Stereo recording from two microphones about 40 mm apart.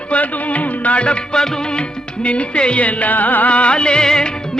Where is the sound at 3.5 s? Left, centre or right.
Left.